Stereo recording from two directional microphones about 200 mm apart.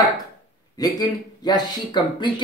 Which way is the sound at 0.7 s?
20° left (ahead or behind).